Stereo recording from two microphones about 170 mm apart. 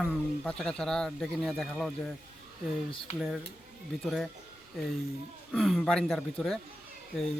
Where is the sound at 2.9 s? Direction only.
30° left (ahead or behind).